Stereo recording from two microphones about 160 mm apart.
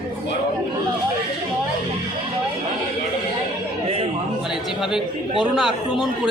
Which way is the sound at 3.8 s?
40° right (ahead or behind).